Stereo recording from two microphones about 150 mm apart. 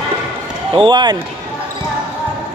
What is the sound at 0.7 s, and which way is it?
Speech, 30° right (ahead or behind).